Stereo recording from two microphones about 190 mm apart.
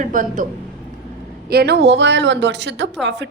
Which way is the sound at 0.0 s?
45° right (ahead or behind).